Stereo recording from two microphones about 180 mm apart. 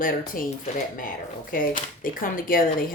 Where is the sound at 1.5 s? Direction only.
50° left (ahead or behind).